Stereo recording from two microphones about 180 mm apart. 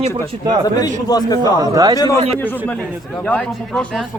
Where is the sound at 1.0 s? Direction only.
20° left (ahead or behind).